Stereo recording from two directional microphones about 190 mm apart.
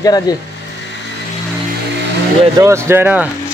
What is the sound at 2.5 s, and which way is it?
Speech, 15° right (ahead or behind).